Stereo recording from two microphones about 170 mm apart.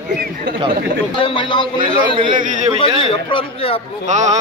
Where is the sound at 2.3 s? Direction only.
45° right (ahead or behind).